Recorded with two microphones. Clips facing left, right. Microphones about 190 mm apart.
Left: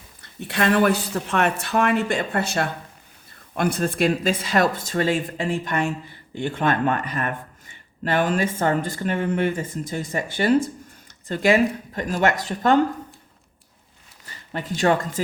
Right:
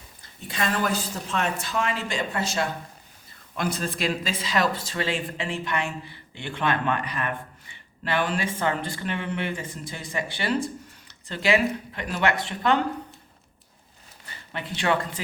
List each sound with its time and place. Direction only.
0.2 s a woman's voice: 65° left (ahead or behind); by 12.8 s 45° left (ahead or behind)
14.5 s speech: 45° left (ahead or behind)